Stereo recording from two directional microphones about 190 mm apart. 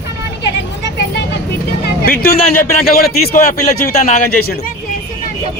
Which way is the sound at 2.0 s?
50° left (ahead or behind).